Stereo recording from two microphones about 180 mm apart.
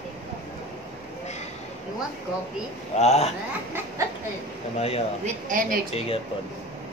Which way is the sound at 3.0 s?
35° left (ahead or behind).